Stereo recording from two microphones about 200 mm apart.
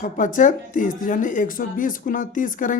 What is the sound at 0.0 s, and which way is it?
A woman's voice, 40° left (ahead or behind).